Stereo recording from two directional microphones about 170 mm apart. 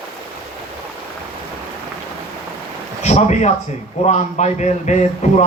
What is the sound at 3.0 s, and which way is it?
A man's voice, 40° left (ahead or behind).